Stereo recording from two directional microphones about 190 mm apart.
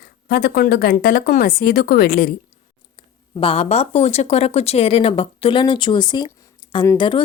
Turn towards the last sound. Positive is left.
turn(degrees=15)  # may be behind; listen again after turning